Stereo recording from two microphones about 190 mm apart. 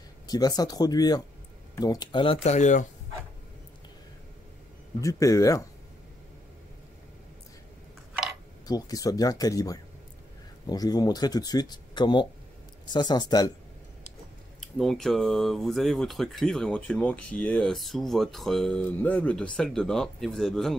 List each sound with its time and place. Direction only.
0.3 s speech: 20° left (ahead or behind); by 2.9 s 40° left (ahead or behind)
5.0 s speech: 15° left (ahead or behind)
8.6 s speech: 20° left (ahead or behind)
14.6 s speech: centre (ahead or behind)